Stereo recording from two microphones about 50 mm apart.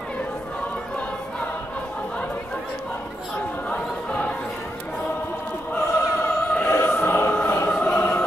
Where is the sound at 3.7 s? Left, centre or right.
Left.